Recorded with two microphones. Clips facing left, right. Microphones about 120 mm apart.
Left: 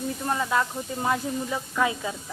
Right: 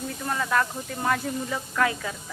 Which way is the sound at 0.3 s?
20° left (ahead or behind).